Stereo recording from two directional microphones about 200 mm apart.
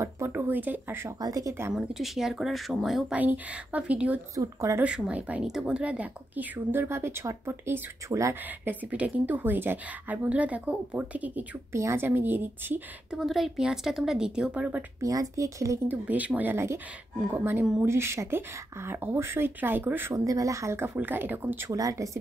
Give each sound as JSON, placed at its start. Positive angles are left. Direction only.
{"t": 0.0, "sound": "speech", "side_deg": -10}